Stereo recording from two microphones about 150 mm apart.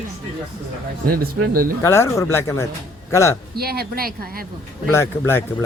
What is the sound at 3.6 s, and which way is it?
Speech, 90° right.